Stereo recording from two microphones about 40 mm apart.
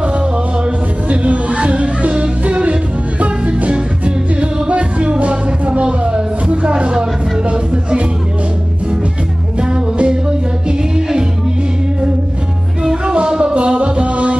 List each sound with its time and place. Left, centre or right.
1.0 s music: right
9.6 s music: right
12.8 s music: right